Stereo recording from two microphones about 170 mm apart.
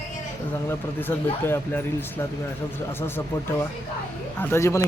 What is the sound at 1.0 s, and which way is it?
Speech, 10° left (ahead or behind).